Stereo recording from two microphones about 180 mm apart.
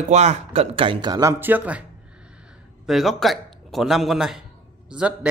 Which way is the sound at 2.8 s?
Centre (ahead or behind).